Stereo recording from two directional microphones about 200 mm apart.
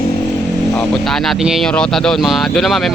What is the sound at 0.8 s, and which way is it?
Speech, centre (ahead or behind).